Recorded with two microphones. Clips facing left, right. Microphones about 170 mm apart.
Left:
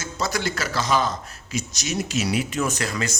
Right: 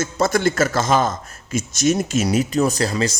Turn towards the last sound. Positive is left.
turn(degrees=-35)  # may be behind; listen again after turning